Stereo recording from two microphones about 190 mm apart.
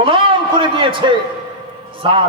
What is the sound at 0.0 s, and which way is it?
A man's voice, 30° right (ahead or behind).